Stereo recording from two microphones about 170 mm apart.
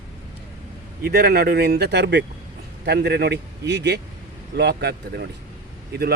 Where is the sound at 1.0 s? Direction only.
65° right (ahead or behind).